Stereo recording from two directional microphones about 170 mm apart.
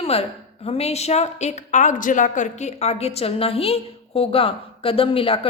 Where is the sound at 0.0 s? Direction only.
35° left (ahead or behind).